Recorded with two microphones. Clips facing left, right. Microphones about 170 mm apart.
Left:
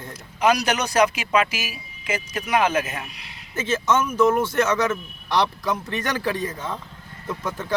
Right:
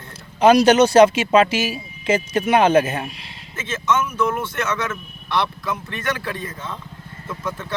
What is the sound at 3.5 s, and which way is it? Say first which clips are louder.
Speech: left 1 dB; 35° left (ahead or behind).